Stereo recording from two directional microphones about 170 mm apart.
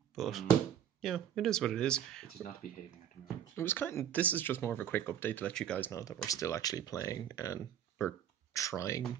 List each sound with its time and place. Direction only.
0.1 s speech: centre (ahead or behind)
3.5 s speech: 15° left (ahead or behind)
5.9 s speech: 20° left (ahead or behind)